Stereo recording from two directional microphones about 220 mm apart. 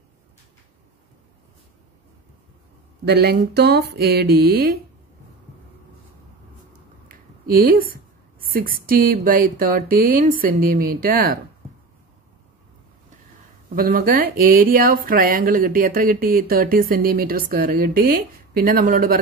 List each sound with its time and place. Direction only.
3.1 s speech: 45° right (ahead or behind)
7.1 s a woman's voice: 40° right (ahead or behind)
13.7 s speech: 40° right (ahead or behind)